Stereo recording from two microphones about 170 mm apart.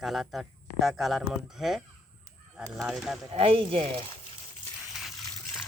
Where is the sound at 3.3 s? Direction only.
30° right (ahead or behind).